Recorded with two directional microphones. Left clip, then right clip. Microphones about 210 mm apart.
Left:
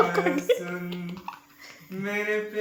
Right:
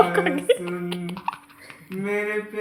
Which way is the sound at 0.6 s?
45° right (ahead or behind).